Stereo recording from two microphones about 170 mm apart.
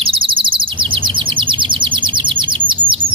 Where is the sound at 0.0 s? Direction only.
30° right (ahead or behind).